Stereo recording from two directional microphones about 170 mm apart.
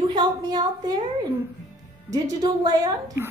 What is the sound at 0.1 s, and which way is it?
Speech, 25° right (ahead or behind).